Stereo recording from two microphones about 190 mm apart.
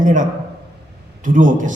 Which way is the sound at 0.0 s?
45° right (ahead or behind).